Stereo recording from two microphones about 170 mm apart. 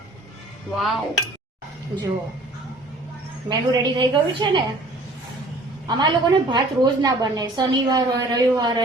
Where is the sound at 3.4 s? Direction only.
25° right (ahead or behind).